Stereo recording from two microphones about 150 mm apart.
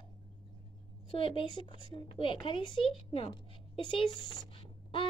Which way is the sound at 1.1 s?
35° left (ahead or behind).